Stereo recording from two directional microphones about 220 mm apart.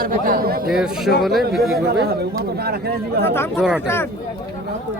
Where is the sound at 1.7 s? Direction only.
45° right (ahead or behind).